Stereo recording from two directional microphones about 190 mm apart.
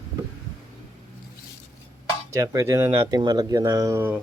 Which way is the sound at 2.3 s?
15° right (ahead or behind).